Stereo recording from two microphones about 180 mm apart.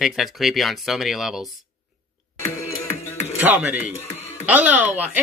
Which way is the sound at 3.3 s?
10° right (ahead or behind).